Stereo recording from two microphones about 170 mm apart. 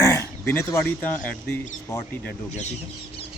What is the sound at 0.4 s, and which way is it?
Speech, 15° left (ahead or behind).